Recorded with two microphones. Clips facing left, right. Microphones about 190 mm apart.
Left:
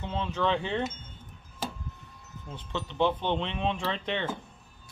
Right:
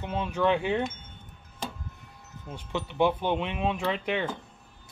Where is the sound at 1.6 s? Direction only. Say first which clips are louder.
Left 1 dB; 5° left (ahead or behind).